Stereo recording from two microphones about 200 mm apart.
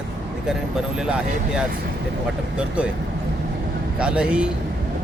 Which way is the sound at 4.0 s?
5° right (ahead or behind).